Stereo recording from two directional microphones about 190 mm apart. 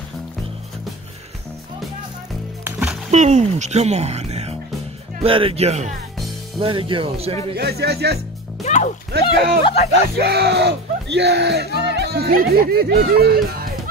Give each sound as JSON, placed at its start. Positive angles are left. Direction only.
{"t": 2.6, "sound": "music", "side_deg": -10}
{"t": 3.1, "sound": "speech", "side_deg": -40}
{"t": 7.5, "sound": "speech", "side_deg": -60}
{"t": 8.6, "sound": "music", "side_deg": 40}
{"t": 9.1, "sound": "speech", "side_deg": -60}
{"t": 9.6, "sound": "speech", "side_deg": 30}
{"t": 10.2, "sound": "speech", "side_deg": -60}